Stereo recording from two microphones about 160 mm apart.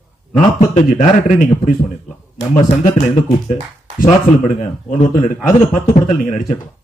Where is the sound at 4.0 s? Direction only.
50° left (ahead or behind).